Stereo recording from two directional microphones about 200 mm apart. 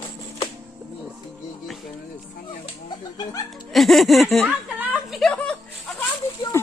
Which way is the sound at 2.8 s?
20° left (ahead or behind).